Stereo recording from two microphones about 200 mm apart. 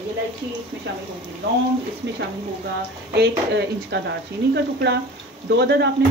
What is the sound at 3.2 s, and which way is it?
Speech, 55° right (ahead or behind).